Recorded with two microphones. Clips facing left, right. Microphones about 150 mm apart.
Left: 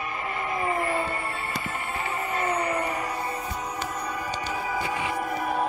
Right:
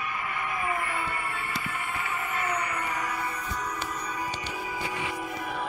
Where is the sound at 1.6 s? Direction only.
30° left (ahead or behind).